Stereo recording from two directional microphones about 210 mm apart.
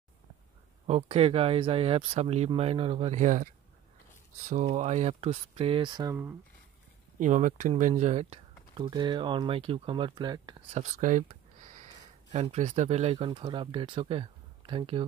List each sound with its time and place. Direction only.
0.8 s speech: 30° right (ahead or behind)
4.5 s speech: 35° right (ahead or behind); by 6.1 s 20° right (ahead or behind)
7.2 s speech: 35° right (ahead or behind); by 10.8 s 20° right (ahead or behind)
10.8 s speech: 35° right (ahead or behind)